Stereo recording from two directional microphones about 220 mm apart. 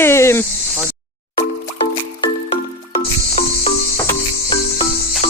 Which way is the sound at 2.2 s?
30° left (ahead or behind).